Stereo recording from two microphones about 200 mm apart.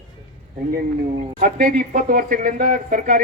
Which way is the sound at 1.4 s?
45° right (ahead or behind).